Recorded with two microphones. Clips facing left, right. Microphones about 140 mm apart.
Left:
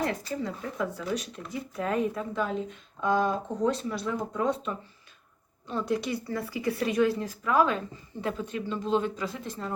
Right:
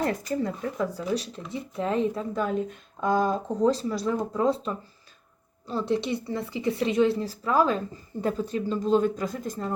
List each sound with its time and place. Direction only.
0.0 s a woman's voice: 40° right (ahead or behind)
2.3 s a woman's voice: 45° right (ahead or behind)